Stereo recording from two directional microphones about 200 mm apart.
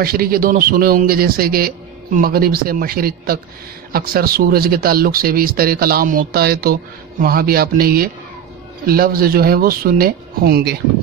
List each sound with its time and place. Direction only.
0.0 s speech: 45° right (ahead or behind)